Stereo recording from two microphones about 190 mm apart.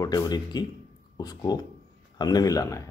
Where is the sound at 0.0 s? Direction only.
20° left (ahead or behind).